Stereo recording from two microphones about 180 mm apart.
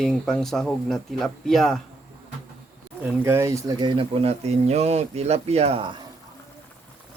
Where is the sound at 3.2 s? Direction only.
15° right (ahead or behind).